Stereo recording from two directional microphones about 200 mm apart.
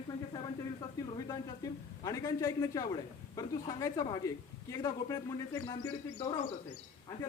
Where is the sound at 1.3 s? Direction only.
15° left (ahead or behind).